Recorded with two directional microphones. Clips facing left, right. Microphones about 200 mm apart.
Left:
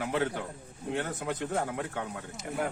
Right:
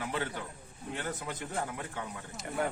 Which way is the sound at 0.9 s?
60° left (ahead or behind).